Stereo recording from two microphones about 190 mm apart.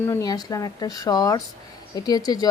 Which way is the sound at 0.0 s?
15° left (ahead or behind).